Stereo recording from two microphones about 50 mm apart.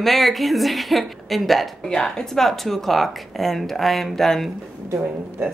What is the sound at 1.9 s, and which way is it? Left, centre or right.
A woman's voice, centre.